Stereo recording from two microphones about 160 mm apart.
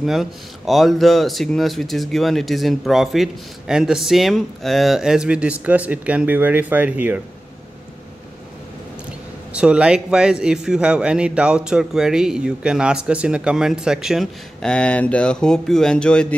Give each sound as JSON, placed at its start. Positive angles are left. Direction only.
{"t": 0.0, "sound": "speech", "side_deg": 0}
{"t": 9.6, "sound": "speech", "side_deg": -5}